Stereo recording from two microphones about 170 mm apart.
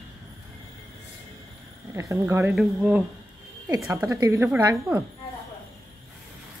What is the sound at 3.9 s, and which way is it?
Speech, 15° right (ahead or behind).